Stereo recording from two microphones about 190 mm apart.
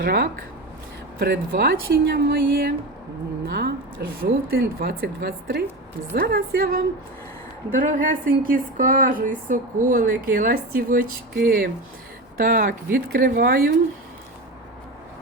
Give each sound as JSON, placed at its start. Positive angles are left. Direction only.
{"t": 0.0, "sound": "speech", "side_deg": -50}